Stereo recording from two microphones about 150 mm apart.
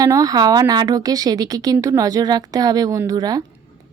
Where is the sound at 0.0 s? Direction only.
25° right (ahead or behind).